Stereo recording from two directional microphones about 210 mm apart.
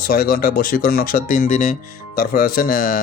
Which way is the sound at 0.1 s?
45° left (ahead or behind).